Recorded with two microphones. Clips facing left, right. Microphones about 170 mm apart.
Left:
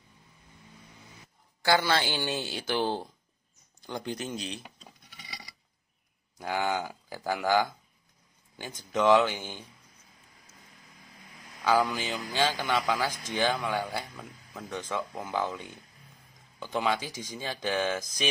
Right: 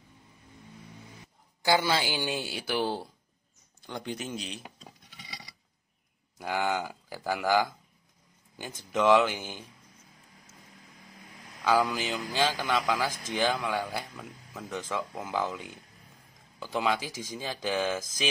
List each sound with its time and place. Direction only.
1.6 s speech: 15° right (ahead or behind)
6.3 s speech: 5° right (ahead or behind)
11.6 s speech: 5° right (ahead or behind)